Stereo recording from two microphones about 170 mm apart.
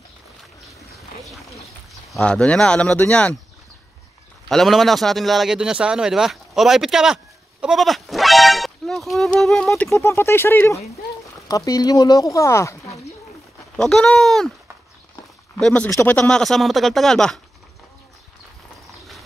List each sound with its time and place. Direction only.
0.7 s boat: centre (ahead or behind)
2.0 s speech: 5° left (ahead or behind)
4.5 s speech: centre (ahead or behind)
9.9 s speech: 15° left (ahead or behind)
13.7 s speech: 5° left (ahead or behind)
15.6 s speech: 5° left (ahead or behind)